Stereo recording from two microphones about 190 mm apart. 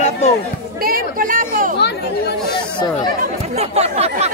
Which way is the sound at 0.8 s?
50° right (ahead or behind).